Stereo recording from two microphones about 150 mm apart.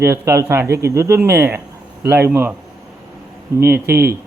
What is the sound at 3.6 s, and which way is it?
Speech, 15° right (ahead or behind).